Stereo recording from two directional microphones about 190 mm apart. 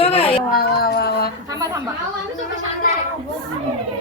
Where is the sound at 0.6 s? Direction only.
55° left (ahead or behind).